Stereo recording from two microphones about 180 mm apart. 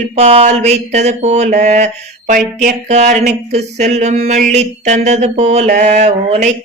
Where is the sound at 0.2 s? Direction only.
40° right (ahead or behind).